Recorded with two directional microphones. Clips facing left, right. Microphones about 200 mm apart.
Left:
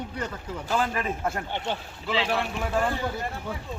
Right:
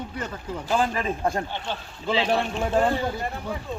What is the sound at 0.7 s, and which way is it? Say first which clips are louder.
Speech: right 3 dB; 25° right (ahead or behind).